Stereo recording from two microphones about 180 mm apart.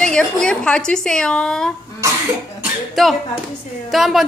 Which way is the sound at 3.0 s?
Centre (ahead or behind).